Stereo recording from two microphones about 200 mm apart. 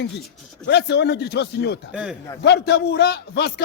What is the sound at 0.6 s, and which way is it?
Speech, 60° left (ahead or behind).